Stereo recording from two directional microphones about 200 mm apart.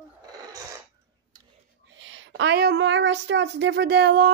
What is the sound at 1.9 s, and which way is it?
Speech, 70° right (ahead or behind).